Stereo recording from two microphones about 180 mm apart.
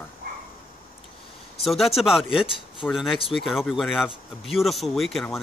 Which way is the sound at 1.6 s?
Centre (ahead or behind).